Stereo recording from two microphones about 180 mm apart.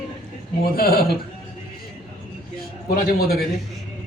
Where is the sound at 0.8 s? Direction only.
55° left (ahead or behind).